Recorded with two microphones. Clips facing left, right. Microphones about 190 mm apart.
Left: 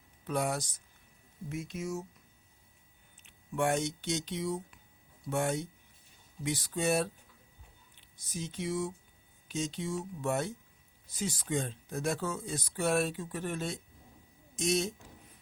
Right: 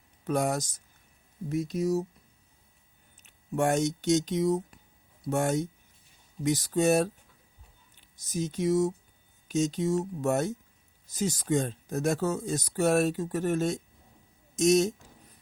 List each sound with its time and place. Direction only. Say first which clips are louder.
0.3 s speech: right 5 dB; 45° right (ahead or behind)
3.2 s speech: right 4 dB; 45° right (ahead or behind)
8.1 s speech: right 8 dB; 45° right (ahead or behind)